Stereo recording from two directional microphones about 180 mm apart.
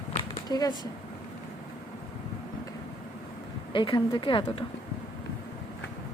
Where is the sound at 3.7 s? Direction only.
25° left (ahead or behind).